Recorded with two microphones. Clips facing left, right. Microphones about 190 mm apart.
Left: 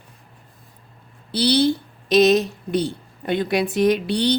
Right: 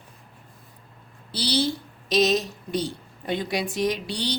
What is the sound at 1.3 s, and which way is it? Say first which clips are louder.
A woman's voice: left 7 dB; 60° left (ahead or behind).